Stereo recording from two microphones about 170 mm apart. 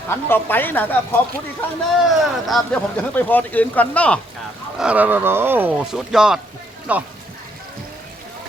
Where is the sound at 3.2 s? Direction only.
10° left (ahead or behind).